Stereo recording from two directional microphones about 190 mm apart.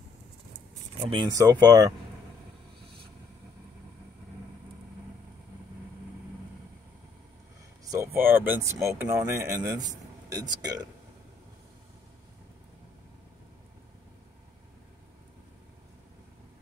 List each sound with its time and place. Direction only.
1.0 s speech: 25° right (ahead or behind)
7.8 s speech: 15° right (ahead or behind)